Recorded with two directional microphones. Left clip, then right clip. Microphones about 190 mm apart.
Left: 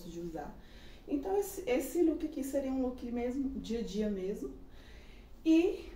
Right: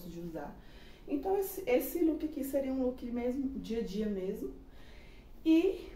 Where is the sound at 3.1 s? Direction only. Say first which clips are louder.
Right 1 dB; 15° right (ahead or behind).